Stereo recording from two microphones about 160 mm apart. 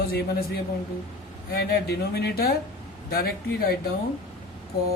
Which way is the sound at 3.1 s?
70° left (ahead or behind).